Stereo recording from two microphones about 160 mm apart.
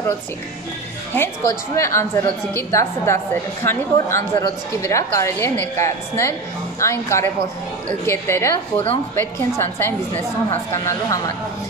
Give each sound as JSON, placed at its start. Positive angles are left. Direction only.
{"t": 1.1, "sound": "a woman's voice", "side_deg": 15}